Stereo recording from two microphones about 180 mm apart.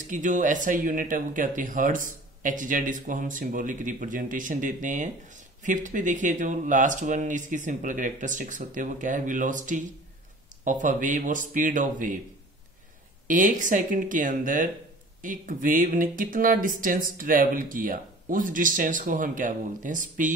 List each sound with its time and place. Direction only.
0.0 s speech: 45° right (ahead or behind)
13.3 s speech: 45° right (ahead or behind)